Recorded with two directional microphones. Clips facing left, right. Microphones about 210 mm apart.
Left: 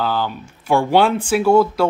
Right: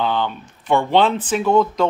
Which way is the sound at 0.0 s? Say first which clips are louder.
Even; 5° left (ahead or behind).